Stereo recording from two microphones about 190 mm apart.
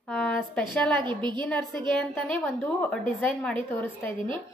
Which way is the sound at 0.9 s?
25° right (ahead or behind).